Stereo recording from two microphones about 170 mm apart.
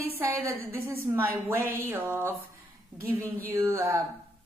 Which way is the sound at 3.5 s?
15° right (ahead or behind).